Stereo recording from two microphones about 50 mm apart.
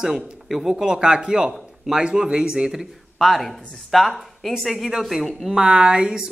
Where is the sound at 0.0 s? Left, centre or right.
Centre.